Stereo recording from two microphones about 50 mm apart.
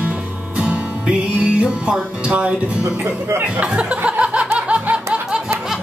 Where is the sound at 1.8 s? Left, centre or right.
Right.